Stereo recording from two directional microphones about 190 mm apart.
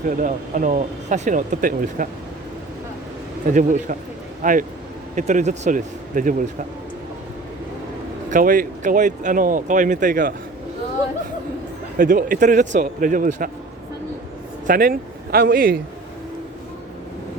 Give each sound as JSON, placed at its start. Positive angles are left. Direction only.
{"t": 0.2, "sound": "speech", "side_deg": -45}
{"t": 3.5, "sound": "speech", "side_deg": -40}
{"t": 8.3, "sound": "speech", "side_deg": -45}
{"t": 11.9, "sound": "speech", "side_deg": -45}
{"t": 14.7, "sound": "speech", "side_deg": -45}